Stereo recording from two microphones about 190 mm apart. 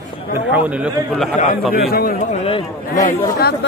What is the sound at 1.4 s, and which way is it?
Speech, 50° left (ahead or behind).